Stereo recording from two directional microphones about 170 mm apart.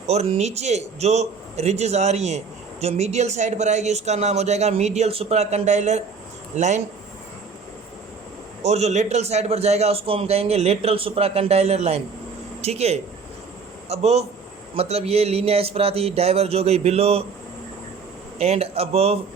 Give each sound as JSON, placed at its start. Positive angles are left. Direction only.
{"t": 0.1, "sound": "a man's voice", "side_deg": -40}
{"t": 8.6, "sound": "a man's voice", "side_deg": -40}
{"t": 18.3, "sound": "a man's voice", "side_deg": -40}